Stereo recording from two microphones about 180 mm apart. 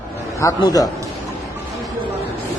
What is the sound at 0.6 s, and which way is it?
Speech, 20° left (ahead or behind).